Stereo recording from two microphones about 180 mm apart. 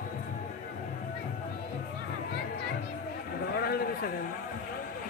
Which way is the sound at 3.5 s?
60° left (ahead or behind).